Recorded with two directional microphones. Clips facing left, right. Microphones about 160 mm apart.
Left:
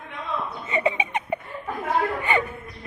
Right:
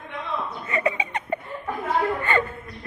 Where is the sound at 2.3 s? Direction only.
15° left (ahead or behind).